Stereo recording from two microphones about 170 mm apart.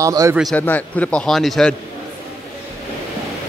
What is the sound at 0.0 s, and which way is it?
Speech, 20° right (ahead or behind).